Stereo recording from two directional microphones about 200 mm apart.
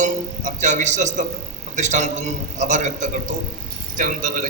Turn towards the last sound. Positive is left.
turn(degrees=-40)  # may be behind; listen again after turning